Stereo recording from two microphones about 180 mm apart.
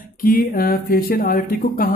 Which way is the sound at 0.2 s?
55° left (ahead or behind).